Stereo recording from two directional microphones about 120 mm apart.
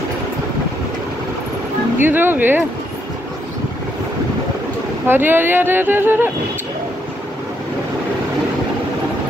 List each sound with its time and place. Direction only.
2.0 s speech: 15° right (ahead or behind)
5.0 s speech: 15° right (ahead or behind)